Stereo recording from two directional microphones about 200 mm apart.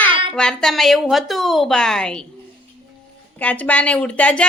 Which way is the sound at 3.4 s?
5° left (ahead or behind).